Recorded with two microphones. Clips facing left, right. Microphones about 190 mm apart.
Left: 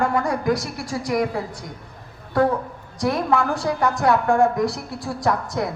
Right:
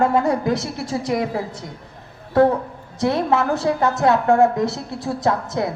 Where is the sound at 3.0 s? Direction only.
25° right (ahead or behind).